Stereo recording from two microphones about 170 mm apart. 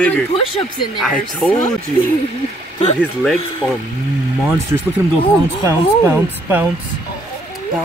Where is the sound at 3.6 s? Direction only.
10° right (ahead or behind).